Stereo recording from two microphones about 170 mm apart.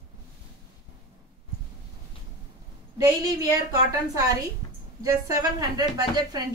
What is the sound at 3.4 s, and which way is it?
A woman's voice, 20° right (ahead or behind).